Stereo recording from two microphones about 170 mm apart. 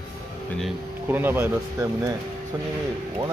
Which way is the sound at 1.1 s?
10° right (ahead or behind).